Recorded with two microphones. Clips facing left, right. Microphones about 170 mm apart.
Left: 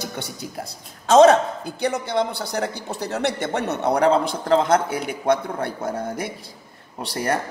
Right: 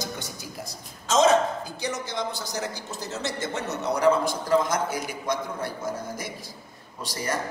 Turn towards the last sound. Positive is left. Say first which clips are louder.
# left 6 dB
turn(degrees=60)  # may be behind; listen again after turning